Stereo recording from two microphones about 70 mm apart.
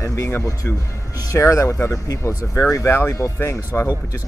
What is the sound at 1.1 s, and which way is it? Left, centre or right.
Speech, left.